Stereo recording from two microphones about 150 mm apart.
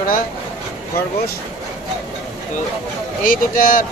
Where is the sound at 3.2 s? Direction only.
60° left (ahead or behind).